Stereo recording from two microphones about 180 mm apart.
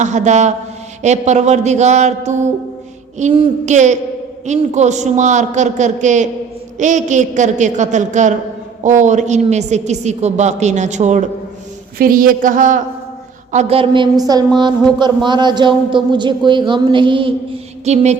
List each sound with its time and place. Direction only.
0.0 s a woman's voice: 40° right (ahead or behind)
11.9 s a man's voice: 50° right (ahead or behind)